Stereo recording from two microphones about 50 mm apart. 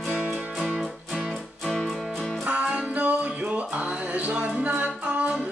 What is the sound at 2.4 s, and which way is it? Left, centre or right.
Music, right.